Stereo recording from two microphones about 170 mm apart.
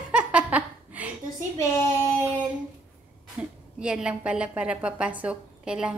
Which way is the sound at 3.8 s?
5° right (ahead or behind).